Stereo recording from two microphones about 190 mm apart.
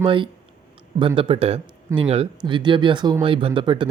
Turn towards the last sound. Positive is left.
turn(degrees=-25)  # may be behind; listen again after turning